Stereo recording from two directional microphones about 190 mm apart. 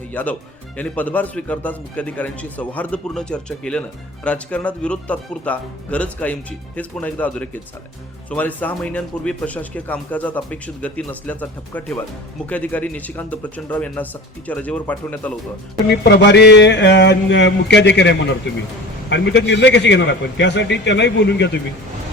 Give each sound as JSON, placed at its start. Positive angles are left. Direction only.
{"t": 0.1, "sound": "a man's voice", "side_deg": 10}
{"t": 16.0, "sound": "a man's voice", "side_deg": 65}